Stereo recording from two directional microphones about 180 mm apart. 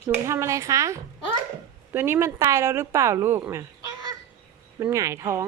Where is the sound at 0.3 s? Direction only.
15° right (ahead or behind).